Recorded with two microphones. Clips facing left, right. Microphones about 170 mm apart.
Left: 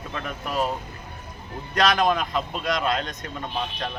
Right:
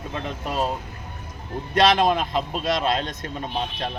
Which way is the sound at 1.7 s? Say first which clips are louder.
Right 3 dB; 25° right (ahead or behind).